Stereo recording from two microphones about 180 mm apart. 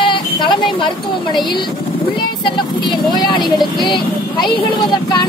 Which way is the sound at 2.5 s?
25° left (ahead or behind).